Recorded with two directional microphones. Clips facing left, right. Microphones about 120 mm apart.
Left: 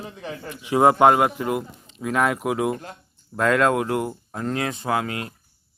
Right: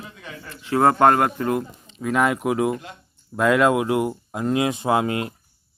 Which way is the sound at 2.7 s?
40° left (ahead or behind).